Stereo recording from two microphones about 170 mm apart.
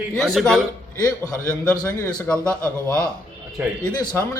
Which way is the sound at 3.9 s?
20° left (ahead or behind).